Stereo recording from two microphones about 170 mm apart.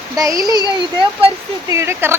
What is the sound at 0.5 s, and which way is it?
Speech, 20° left (ahead or behind).